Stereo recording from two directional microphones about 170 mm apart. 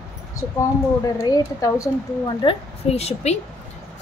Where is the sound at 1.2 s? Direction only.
20° left (ahead or behind).